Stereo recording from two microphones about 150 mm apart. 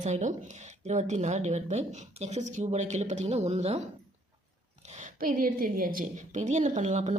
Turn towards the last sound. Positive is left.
turn(degrees=-50)  # may be behind; listen again after turning